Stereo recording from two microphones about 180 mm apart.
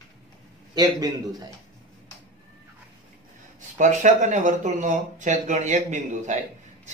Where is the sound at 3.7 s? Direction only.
45° right (ahead or behind).